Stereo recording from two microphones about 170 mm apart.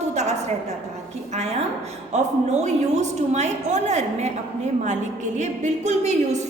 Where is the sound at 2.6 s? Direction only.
45° right (ahead or behind).